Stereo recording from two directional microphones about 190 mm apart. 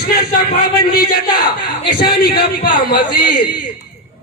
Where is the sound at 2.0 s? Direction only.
55° left (ahead or behind).